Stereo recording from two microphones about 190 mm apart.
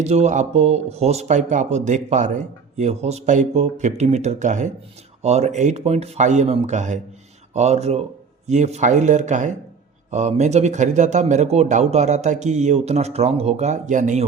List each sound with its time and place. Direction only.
0.0 s speech: 35° right (ahead or behind)